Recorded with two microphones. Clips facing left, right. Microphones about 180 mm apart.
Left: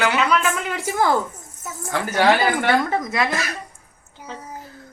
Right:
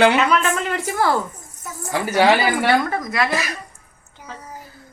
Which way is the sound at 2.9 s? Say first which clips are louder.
Even; 20° left (ahead or behind).